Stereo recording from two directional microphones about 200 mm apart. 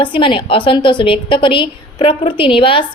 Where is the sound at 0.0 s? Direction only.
25° left (ahead or behind).